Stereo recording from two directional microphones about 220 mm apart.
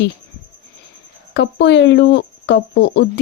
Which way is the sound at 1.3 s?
55° left (ahead or behind).